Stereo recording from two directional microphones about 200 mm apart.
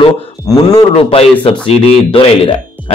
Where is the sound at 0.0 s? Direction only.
20° left (ahead or behind).